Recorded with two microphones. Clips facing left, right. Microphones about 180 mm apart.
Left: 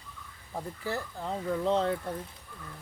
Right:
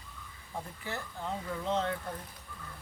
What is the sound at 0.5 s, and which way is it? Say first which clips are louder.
Speech: left 5 dB; 35° left (ahead or behind).